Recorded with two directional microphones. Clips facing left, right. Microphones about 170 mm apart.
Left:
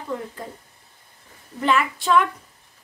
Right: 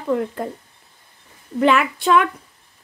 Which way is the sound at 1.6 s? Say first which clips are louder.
Right 5 dB; 65° right (ahead or behind).